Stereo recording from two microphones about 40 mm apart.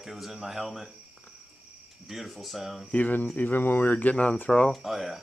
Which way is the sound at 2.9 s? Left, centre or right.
Left.